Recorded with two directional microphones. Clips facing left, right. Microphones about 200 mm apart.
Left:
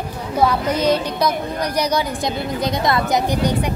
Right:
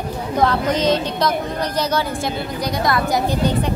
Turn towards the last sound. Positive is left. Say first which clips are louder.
# even
turn(degrees=20)  # may be behind; listen again after turning